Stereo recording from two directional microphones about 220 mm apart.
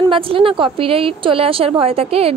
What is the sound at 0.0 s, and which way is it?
A woman's voice, 25° right (ahead or behind).